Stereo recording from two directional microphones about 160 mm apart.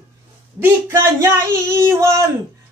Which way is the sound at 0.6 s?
15° right (ahead or behind).